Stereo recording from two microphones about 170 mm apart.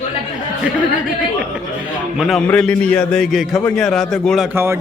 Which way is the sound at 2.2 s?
Centre (ahead or behind).